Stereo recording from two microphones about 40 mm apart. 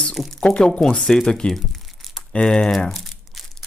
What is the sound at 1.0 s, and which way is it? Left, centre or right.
Speech, centre.